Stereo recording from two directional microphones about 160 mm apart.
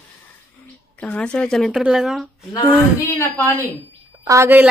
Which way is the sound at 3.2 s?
15° left (ahead or behind).